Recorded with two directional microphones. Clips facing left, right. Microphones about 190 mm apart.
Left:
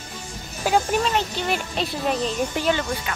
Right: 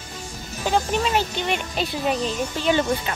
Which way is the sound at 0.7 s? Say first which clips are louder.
Left 1 dB; 5° left (ahead or behind).